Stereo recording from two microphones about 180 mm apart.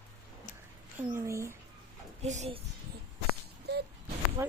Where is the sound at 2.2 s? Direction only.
40° right (ahead or behind).